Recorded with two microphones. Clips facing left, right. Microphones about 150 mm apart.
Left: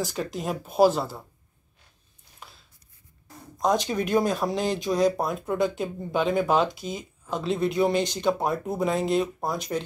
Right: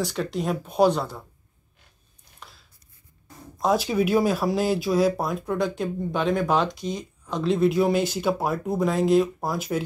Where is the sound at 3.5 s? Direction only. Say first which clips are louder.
Right 2 dB; 5° right (ahead or behind).